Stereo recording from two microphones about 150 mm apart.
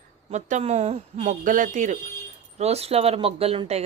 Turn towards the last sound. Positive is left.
turn(degrees=-40)  # may be behind; listen again after turning